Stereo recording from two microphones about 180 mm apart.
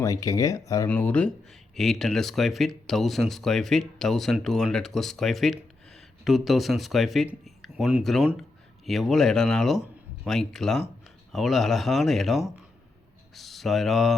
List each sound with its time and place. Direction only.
0.0 s speech: 20° left (ahead or behind); by 14.2 s centre (ahead or behind)